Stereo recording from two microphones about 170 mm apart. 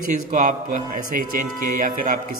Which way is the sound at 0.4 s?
50° right (ahead or behind).